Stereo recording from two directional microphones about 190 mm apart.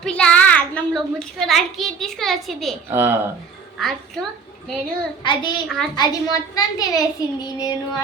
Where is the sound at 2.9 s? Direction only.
10° right (ahead or behind).